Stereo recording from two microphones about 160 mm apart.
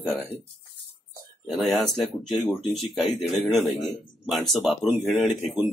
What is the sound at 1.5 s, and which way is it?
A man's voice, centre (ahead or behind).